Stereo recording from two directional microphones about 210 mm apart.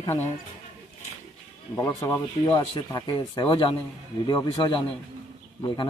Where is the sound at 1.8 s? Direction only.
15° left (ahead or behind).